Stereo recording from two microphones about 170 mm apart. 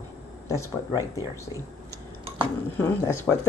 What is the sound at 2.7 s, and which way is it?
Speech, 15° left (ahead or behind).